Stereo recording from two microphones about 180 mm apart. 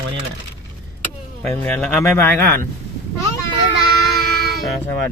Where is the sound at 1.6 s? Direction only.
10° left (ahead or behind).